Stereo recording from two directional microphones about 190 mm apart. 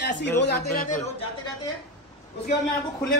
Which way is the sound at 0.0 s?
65° left (ahead or behind).